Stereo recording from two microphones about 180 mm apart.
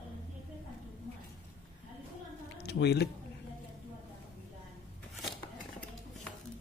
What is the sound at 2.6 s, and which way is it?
Speech, 65° left (ahead or behind).